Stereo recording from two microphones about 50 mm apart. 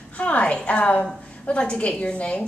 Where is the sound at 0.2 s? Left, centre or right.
Left.